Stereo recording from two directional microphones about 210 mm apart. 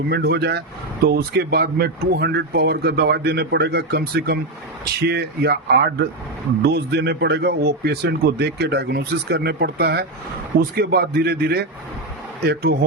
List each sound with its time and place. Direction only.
0.1 s a man's voice: 50° right (ahead or behind)